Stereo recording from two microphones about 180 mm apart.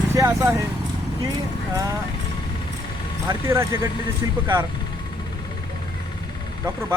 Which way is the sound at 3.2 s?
15° right (ahead or behind).